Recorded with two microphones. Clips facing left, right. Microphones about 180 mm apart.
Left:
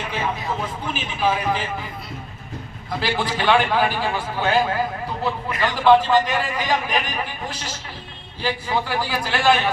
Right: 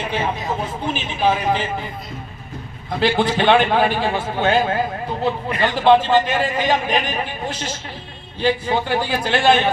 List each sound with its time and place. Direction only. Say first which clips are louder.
0.6 s a man's voice: right 3 dB; 25° right (ahead or behind)
3.0 s a man's voice: right 6 dB; 25° right (ahead or behind)